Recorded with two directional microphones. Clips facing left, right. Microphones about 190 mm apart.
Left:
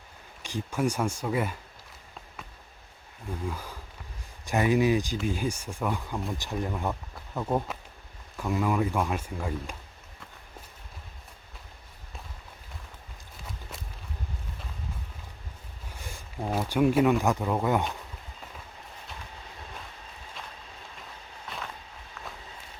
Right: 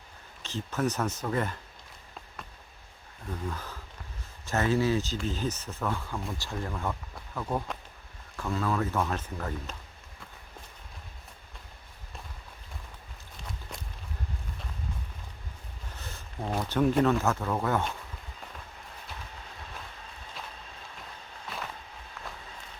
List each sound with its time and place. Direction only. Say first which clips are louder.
0.4 s speech: left 2 dB; 10° left (ahead or behind)
3.4 s speech: left 2 dB; 10° left (ahead or behind)
13.4 s walk: even; 5° left (ahead or behind)
15.9 s speech: left 2 dB; 10° left (ahead or behind)
21.5 s walk: even; centre (ahead or behind)